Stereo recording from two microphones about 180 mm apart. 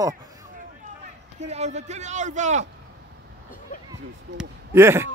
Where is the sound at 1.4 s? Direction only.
40° right (ahead or behind).